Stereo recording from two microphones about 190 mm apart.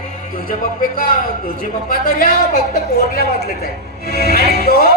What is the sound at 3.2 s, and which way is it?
Speech, 60° right (ahead or behind).